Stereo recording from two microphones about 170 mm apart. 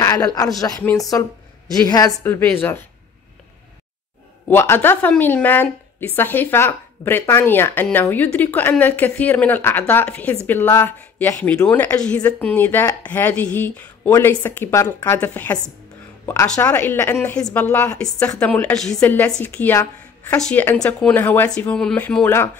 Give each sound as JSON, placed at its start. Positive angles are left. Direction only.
{"t": 0.0, "sound": "a woman's voice", "side_deg": 20}
{"t": 4.5, "sound": "a woman's voice", "side_deg": 10}